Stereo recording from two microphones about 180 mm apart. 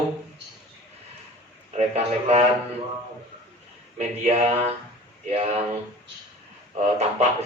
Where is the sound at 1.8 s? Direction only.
35° right (ahead or behind).